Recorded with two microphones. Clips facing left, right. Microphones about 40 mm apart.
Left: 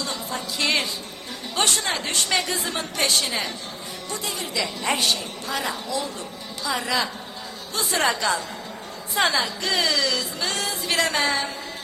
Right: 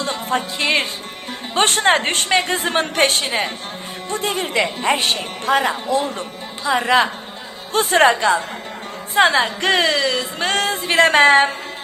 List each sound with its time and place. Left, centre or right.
0.0 s music: right
0.6 s a woman's voice: right